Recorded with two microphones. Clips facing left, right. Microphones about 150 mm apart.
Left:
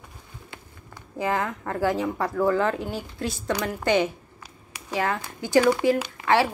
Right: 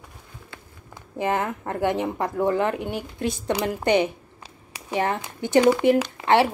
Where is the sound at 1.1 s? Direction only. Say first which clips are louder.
Right 2 dB; 20° right (ahead or behind).